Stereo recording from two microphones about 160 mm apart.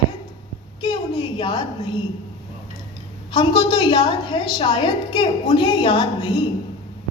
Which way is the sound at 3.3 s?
30° left (ahead or behind).